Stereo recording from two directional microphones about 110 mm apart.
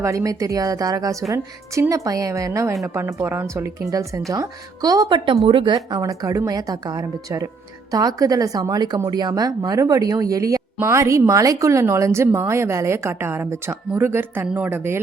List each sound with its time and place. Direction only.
0.0 s a woman's voice: 25° right (ahead or behind); by 6.0 s 45° right (ahead or behind)
6.0 s speech: 30° right (ahead or behind)